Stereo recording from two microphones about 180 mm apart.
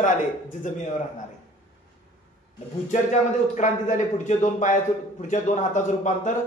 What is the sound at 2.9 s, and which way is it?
Speech, 40° left (ahead or behind).